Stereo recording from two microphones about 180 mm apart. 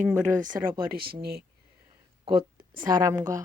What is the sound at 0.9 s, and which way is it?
Speech, 60° right (ahead or behind).